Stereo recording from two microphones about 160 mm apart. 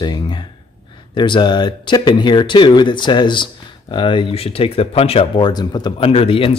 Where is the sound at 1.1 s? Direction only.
30° left (ahead or behind).